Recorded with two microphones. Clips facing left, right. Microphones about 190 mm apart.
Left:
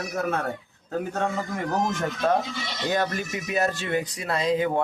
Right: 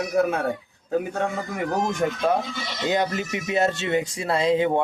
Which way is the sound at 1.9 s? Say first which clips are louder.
Right 2 dB; 15° right (ahead or behind).